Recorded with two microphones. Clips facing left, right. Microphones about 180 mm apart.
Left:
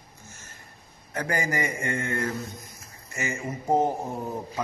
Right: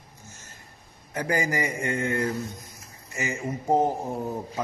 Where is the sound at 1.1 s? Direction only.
15° right (ahead or behind).